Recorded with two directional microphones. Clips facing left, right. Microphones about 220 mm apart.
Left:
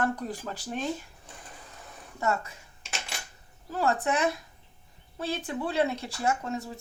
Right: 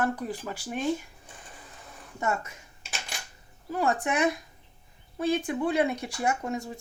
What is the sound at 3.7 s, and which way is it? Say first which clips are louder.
Speech: even; 15° right (ahead or behind).